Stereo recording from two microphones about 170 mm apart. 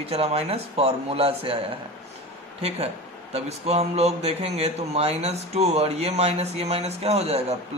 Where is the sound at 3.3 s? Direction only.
40° right (ahead or behind).